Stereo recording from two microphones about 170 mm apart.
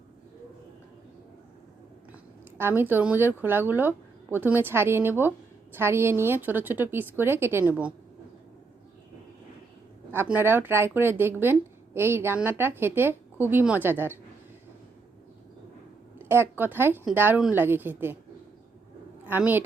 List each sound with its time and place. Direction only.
2.6 s speech: 15° right (ahead or behind)
10.1 s speech: 10° right (ahead or behind)
16.1 s speech: 15° right (ahead or behind)
19.2 s a woman's voice: 10° right (ahead or behind)